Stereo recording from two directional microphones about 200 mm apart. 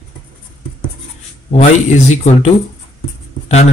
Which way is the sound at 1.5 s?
35° left (ahead or behind).